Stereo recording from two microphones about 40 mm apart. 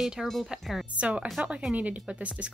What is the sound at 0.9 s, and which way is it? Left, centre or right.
Speech, right.